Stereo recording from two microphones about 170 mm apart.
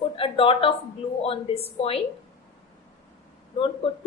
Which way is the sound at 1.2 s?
35° left (ahead or behind).